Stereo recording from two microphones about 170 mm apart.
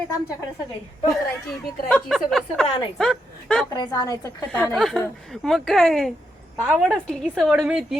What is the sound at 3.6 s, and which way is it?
Speech, 25° left (ahead or behind).